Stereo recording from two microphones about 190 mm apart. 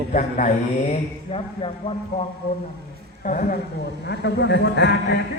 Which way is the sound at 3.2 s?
45° left (ahead or behind).